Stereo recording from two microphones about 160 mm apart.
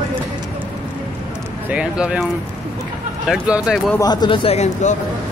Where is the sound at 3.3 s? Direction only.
Centre (ahead or behind).